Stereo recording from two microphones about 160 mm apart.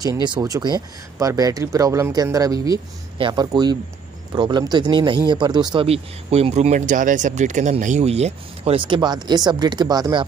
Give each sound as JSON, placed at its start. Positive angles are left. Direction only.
{"t": 0.0, "sound": "speech", "side_deg": -25}
{"t": 5.9, "sound": "speech", "side_deg": -40}